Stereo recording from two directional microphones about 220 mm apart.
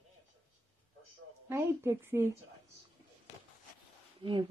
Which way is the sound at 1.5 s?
10° right (ahead or behind).